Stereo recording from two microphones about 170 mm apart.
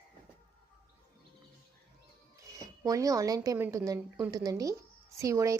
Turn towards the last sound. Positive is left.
turn(degrees=-20)  # may be behind; listen again after turning